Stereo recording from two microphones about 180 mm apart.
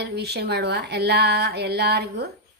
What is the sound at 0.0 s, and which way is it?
A woman's voice, 65° right (ahead or behind).